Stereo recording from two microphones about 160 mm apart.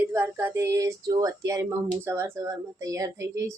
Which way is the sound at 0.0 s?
15° right (ahead or behind).